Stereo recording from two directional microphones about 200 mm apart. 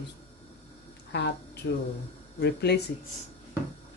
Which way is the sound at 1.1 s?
60° left (ahead or behind).